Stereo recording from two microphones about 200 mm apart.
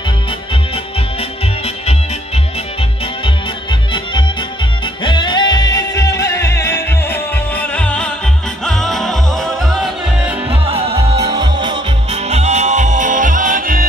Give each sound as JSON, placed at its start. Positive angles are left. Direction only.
{"t": 5.0, "sound": "music", "side_deg": 25}
{"t": 10.5, "sound": "music", "side_deg": -30}